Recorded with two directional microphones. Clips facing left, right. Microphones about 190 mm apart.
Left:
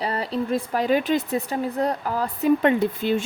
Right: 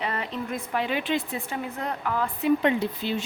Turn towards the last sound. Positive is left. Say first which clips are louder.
# left 5 dB
turn(degrees=50)  # may be behind; listen again after turning